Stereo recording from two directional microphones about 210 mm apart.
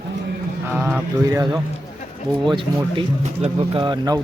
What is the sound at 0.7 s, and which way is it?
Speech, 10° right (ahead or behind).